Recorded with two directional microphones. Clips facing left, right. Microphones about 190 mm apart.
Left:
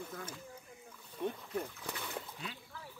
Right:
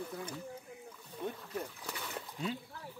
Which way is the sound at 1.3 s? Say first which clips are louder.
Left 2 dB; 5° right (ahead or behind).